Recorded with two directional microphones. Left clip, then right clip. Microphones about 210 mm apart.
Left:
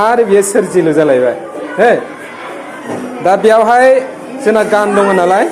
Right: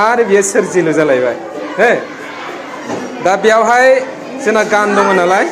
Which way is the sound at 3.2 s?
30° left (ahead or behind).